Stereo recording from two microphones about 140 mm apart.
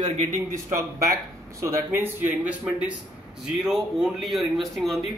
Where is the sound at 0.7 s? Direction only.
20° right (ahead or behind).